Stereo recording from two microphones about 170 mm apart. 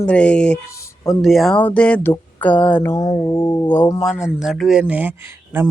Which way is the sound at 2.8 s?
20° left (ahead or behind).